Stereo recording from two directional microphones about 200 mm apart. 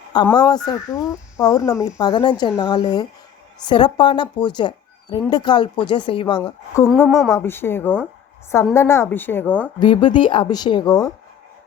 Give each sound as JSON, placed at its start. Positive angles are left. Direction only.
{"t": 0.3, "sound": "speech", "side_deg": 20}
{"t": 6.7, "sound": "speech", "side_deg": 15}
{"t": 7.1, "sound": "speech", "side_deg": 0}
{"t": 7.3, "sound": "speech", "side_deg": 10}
{"t": 9.8, "sound": "speech", "side_deg": 25}